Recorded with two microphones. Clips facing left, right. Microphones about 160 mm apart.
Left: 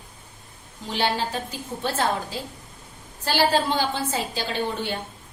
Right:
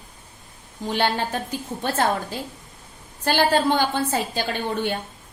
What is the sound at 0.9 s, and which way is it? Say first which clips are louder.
Speech: right 2 dB; 55° right (ahead or behind).